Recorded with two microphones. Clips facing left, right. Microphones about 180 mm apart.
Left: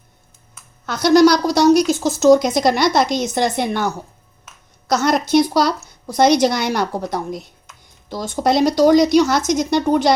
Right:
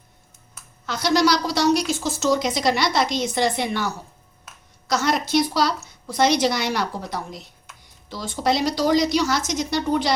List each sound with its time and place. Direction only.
0.9 s a woman's voice: 50° left (ahead or behind)
4.9 s a woman's voice: 50° left (ahead or behind)